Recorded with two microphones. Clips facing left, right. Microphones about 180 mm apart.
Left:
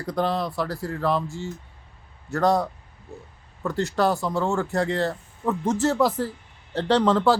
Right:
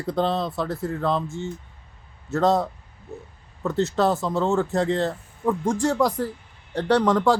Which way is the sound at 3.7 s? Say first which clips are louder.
Right 1 dB; 20° right (ahead or behind).